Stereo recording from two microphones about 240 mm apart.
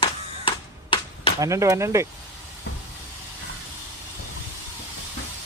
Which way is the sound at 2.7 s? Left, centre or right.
Left.